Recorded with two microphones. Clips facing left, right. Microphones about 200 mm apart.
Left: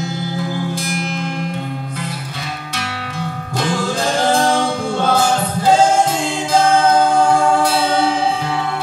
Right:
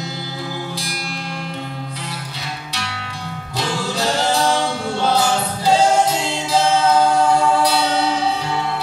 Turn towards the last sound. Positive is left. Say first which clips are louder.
# left 2 dB
turn(degrees=50)  # may be behind; listen again after turning